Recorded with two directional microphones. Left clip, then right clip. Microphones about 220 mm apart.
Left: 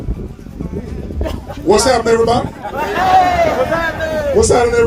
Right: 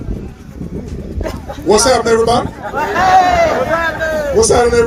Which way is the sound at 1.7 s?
50° right (ahead or behind).